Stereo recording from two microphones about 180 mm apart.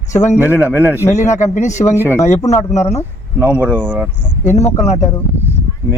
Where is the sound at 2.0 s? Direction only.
15° left (ahead or behind).